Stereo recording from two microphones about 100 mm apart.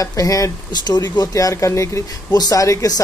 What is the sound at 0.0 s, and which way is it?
Speech, 35° left (ahead or behind).